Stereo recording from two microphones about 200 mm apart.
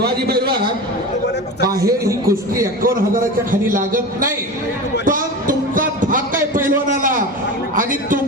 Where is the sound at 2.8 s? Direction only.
45° right (ahead or behind).